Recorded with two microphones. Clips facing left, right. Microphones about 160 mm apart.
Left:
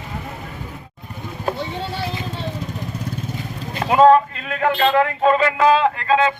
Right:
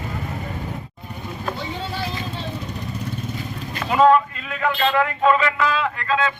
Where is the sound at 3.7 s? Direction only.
35° left (ahead or behind).